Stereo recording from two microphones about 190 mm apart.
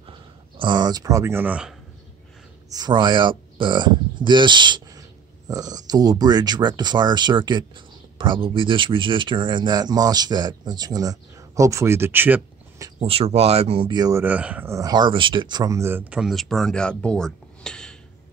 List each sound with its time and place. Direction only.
0.6 s speech: 25° right (ahead or behind); by 1.8 s 5° right (ahead or behind)
2.7 s speech: 20° right (ahead or behind)
13.0 s speech: 30° right (ahead or behind); by 17.9 s 5° left (ahead or behind)